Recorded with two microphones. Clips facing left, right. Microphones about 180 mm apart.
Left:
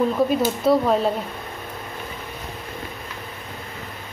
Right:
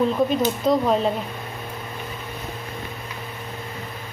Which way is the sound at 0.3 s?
5° left (ahead or behind).